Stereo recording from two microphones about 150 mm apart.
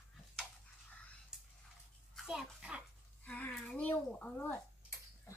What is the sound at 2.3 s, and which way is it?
Bathtub, 5° right (ahead or behind).